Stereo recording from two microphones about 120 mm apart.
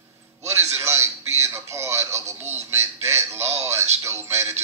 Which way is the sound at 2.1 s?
65° right (ahead or behind).